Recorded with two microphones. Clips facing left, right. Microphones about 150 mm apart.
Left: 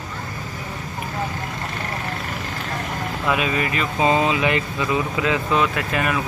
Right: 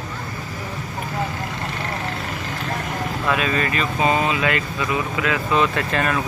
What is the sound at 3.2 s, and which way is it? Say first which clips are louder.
Speech: even; 10° left (ahead or behind).